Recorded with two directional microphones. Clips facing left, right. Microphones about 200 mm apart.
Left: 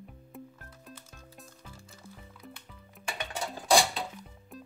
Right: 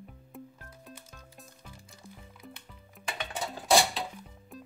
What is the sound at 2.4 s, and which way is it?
Music, centre (ahead or behind).